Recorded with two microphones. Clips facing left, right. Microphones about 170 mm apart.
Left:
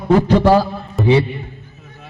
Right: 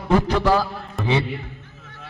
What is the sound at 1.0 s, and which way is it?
Speech, centre (ahead or behind).